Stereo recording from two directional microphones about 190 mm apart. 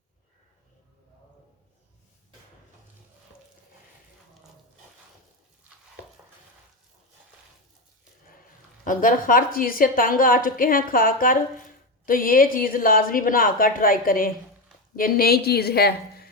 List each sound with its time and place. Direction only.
8.8 s a woman's voice: 45° left (ahead or behind)